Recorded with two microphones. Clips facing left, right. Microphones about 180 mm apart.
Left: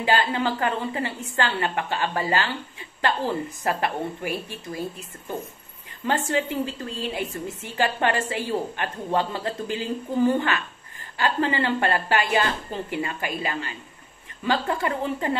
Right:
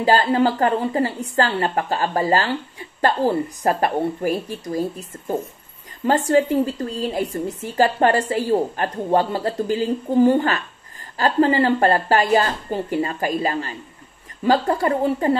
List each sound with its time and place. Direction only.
0.0 s a woman's voice: 40° right (ahead or behind)
6.0 s a woman's voice: 40° right (ahead or behind)